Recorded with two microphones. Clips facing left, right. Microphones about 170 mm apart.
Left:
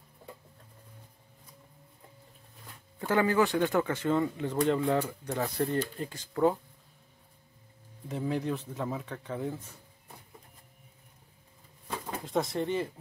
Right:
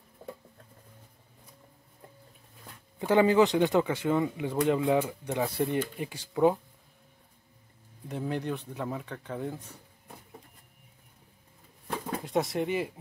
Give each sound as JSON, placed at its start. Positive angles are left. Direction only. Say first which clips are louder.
{"t": 3.0, "sound": "speech", "louder": "right 4 dB", "side_deg": -20}
{"t": 8.1, "sound": "speech", "louder": "left 1 dB", "side_deg": 0}
{"t": 12.3, "sound": "speech", "louder": "right 1 dB", "side_deg": 0}
{"t": 12.5, "sound": "speech", "louder": "right 1 dB", "side_deg": -10}